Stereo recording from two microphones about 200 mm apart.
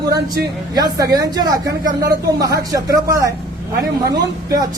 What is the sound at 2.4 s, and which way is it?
Speech, 15° right (ahead or behind).